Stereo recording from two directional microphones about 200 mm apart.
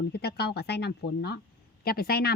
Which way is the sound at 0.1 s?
55° left (ahead or behind).